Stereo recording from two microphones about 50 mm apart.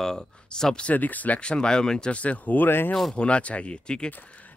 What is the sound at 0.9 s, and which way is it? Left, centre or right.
Speech, left.